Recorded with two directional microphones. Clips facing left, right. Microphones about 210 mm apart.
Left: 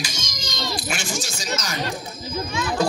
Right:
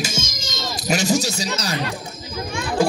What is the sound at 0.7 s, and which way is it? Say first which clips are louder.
Speech: right 13 dB; 40° right (ahead or behind).